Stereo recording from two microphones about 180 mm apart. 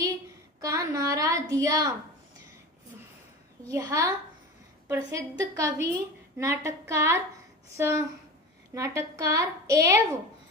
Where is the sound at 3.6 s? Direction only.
20° right (ahead or behind).